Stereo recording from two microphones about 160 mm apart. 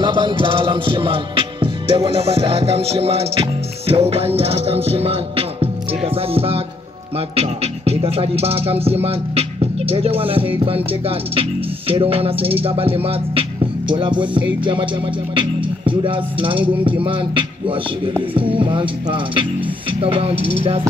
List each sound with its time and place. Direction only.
0.0 s music: 30° right (ahead or behind)